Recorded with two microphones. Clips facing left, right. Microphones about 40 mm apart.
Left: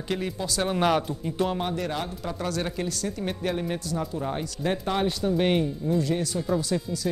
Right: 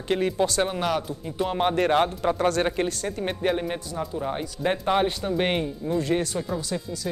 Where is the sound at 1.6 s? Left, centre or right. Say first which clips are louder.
Right 8 dB; right; by 4.5 s centre.